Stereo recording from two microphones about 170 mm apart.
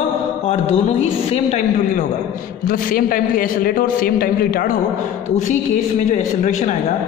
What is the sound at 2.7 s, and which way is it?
A man's voice, 55° left (ahead or behind).